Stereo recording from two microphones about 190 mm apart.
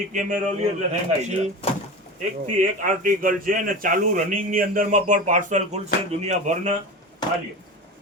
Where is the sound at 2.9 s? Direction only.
45° right (ahead or behind).